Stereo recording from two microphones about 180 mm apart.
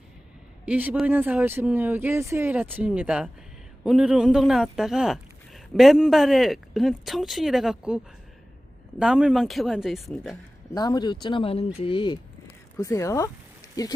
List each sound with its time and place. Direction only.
0.6 s speech: 10° right (ahead or behind)
10.8 s speech: 20° left (ahead or behind)